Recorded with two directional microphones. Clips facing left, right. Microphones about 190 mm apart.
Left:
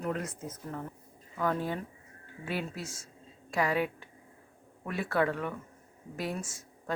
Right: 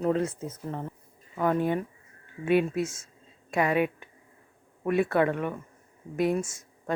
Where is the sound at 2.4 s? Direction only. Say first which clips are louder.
Right 12 dB; 60° right (ahead or behind).